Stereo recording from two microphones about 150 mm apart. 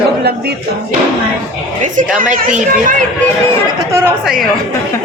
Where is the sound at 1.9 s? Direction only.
65° right (ahead or behind).